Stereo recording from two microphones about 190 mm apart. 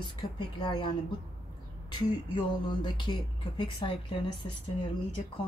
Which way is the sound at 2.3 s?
25° left (ahead or behind).